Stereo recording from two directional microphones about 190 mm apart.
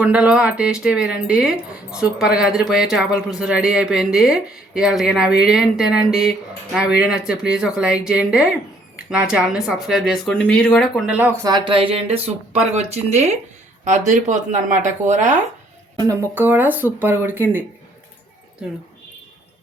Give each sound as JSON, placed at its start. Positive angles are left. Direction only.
{"t": 0.0, "sound": "speech", "side_deg": -5}
{"t": 11.4, "sound": "speech", "side_deg": -25}
{"t": 16.0, "sound": "speech", "side_deg": -15}
{"t": 18.6, "sound": "speech", "side_deg": -5}